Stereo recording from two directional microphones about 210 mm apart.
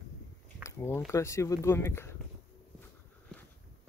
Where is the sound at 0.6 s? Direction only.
10° left (ahead or behind).